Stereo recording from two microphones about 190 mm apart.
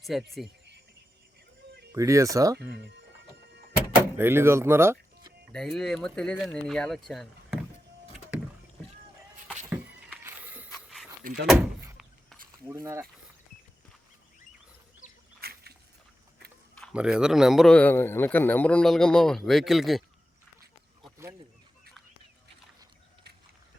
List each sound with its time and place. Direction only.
0.0 s speech: centre (ahead or behind)
1.9 s speech: 15° right (ahead or behind)
2.6 s music: 65° right (ahead or behind)
4.2 s speech: 10° right (ahead or behind)
5.5 s a man's voice: centre (ahead or behind)
10.2 s walk: 10° right (ahead or behind)
10.8 s a sound: centre (ahead or behind)
11.2 s speech: 45° right (ahead or behind)
11.5 s door: 10° right (ahead or behind)
12.6 s speech: 10° right (ahead or behind)
15.4 s a sound: 55° right (ahead or behind)
16.9 s a man's voice: 5° right (ahead or behind)